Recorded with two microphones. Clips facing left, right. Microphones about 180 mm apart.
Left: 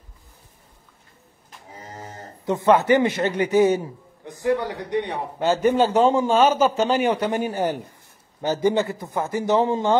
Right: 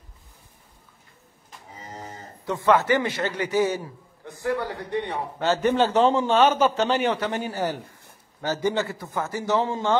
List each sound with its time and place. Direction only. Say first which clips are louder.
2.4 s a man's voice: left 3 dB; 20° left (ahead or behind)